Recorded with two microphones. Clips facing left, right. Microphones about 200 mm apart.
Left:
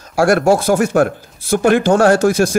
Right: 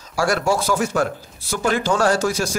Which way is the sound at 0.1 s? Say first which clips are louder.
Left 8 dB; 55° left (ahead or behind).